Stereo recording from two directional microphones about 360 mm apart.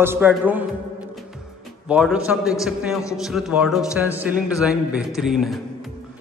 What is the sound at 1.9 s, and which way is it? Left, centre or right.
A man's voice, centre.